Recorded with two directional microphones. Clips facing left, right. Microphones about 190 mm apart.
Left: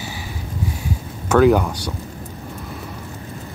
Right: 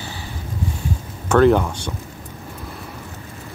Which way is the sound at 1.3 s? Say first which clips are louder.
Even; 5° left (ahead or behind).